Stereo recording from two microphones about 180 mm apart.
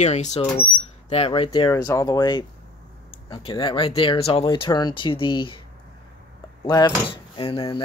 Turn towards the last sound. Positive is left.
turn(degrees=30)  # may be behind; listen again after turning